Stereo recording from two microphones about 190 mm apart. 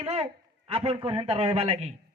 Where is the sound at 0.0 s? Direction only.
30° right (ahead or behind).